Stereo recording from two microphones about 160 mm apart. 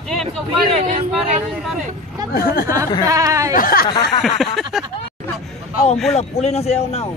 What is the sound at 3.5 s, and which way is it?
Speech, 65° left (ahead or behind).